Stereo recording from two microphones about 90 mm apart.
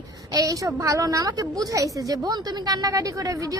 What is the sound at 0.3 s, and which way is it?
A woman's voice, 40° right (ahead or behind).